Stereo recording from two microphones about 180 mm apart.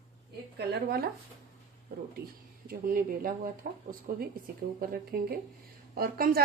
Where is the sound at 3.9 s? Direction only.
50° right (ahead or behind).